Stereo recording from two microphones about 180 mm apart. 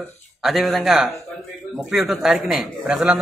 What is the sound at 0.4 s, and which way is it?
A man's voice, centre (ahead or behind).